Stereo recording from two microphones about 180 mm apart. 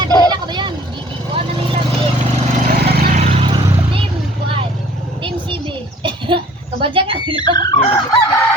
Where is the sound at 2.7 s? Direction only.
60° right (ahead or behind).